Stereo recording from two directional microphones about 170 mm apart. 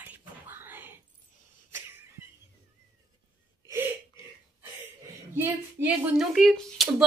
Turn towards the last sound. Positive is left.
turn(degrees=0)  # may be behind; listen again after turning